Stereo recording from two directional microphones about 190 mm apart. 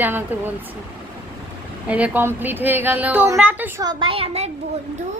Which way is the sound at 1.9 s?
10° right (ahead or behind).